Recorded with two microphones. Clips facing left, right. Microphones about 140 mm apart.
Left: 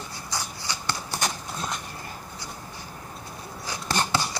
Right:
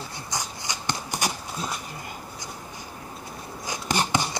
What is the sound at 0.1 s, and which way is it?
Shuffling cards, 20° right (ahead or behind).